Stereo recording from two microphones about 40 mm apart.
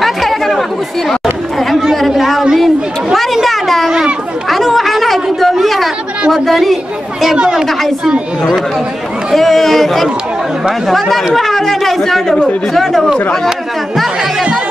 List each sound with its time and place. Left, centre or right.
0.0 s chatter: centre
2.0 s a sound: centre
3.4 s a sound: centre
4.5 s chatter: centre
6.3 s speech: centre
7.3 s speech: centre
9.3 s speech: centre